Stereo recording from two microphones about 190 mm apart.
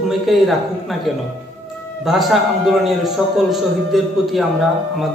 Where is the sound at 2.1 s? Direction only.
Centre (ahead or behind).